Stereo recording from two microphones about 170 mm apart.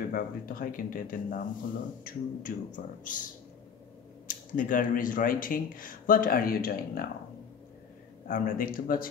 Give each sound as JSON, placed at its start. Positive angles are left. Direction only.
{"t": 0.1, "sound": "a man's voice", "side_deg": 55}
{"t": 4.3, "sound": "speech", "side_deg": 50}
{"t": 8.3, "sound": "speech", "side_deg": 55}